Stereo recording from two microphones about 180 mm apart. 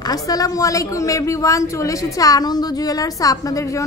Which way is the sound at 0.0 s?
20° left (ahead or behind).